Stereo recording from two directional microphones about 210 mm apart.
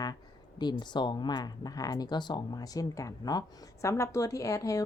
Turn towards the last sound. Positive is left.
turn(degrees=15)  # may be behind; listen again after turning